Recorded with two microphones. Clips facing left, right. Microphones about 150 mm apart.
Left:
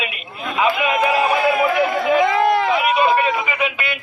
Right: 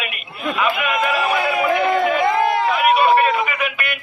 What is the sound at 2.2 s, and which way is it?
Speech, 90° left.